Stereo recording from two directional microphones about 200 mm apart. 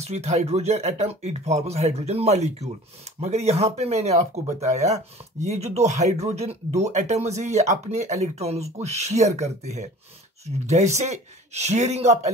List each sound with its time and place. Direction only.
0.0 s speech: 35° right (ahead or behind)